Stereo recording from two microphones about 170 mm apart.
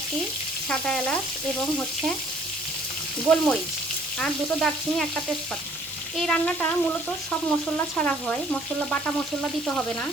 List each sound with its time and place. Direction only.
0.7 s frying: 5° left (ahead or behind)
3.2 s frying: 5° left (ahead or behind)
6.1 s frying: 5° left (ahead or behind)
7.9 s frying: 5° left (ahead or behind)
9.6 s frying: 5° left (ahead or behind)